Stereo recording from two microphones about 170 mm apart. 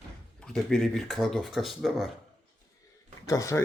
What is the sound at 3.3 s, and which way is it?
Speech, 20° left (ahead or behind).